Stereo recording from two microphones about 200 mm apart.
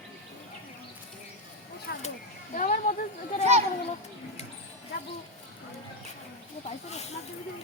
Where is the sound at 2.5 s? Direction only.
40° left (ahead or behind).